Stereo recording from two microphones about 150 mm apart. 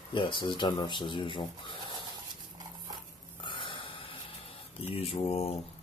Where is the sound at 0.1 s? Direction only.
35° left (ahead or behind).